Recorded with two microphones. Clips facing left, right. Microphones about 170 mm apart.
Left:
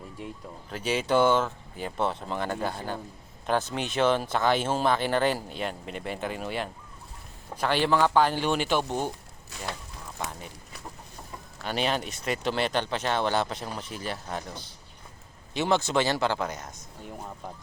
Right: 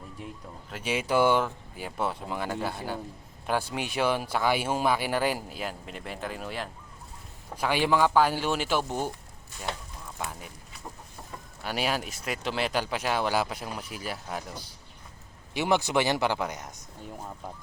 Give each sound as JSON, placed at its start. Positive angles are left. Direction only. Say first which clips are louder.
{"t": 0.7, "sound": "speech", "louder": "left 2 dB", "side_deg": -5}
{"t": 7.5, "sound": "speech", "louder": "left 1 dB", "side_deg": -10}
{"t": 10.2, "sound": "a sound", "louder": "left 1 dB", "side_deg": -10}
{"t": 11.6, "sound": "speech", "louder": "left 2 dB", "side_deg": -5}